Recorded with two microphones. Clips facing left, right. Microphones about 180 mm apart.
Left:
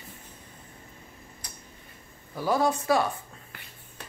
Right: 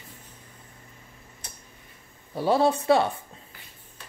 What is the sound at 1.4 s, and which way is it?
Tick-tock, 25° right (ahead or behind).